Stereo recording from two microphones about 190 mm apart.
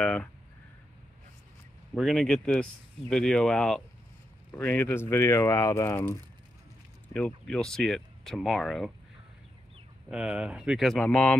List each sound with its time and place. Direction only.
0.0 s speech: 5° left (ahead or behind)
2.0 s speech: centre (ahead or behind)
7.2 s speech: 5° left (ahead or behind)
10.0 s speech: 5° right (ahead or behind)